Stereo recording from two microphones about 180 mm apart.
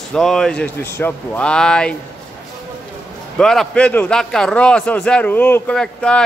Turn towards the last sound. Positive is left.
turn(degrees=5)  # may be behind; listen again after turning